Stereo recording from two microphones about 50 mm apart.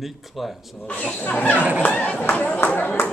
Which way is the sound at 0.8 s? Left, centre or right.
Left.